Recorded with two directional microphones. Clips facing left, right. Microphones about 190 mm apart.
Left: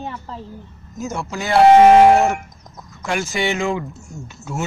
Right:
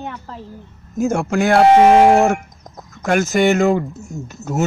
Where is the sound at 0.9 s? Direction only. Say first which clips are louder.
Right 9 dB; 55° right (ahead or behind).